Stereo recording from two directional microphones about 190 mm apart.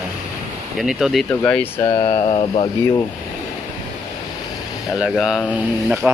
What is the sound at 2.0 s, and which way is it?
Speech, 25° left (ahead or behind).